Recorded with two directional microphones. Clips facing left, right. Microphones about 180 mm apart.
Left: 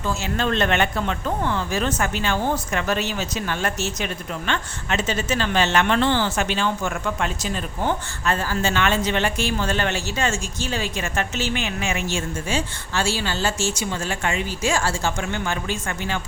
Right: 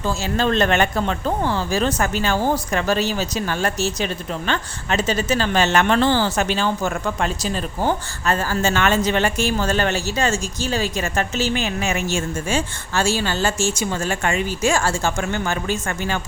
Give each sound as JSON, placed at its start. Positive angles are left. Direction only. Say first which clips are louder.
{"t": 0.0, "sound": "speech", "louder": "right 3 dB", "side_deg": -35}